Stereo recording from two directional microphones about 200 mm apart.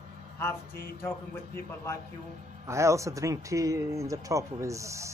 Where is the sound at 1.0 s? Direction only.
10° left (ahead or behind).